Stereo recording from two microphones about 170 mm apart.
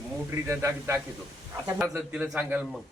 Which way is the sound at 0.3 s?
15° right (ahead or behind).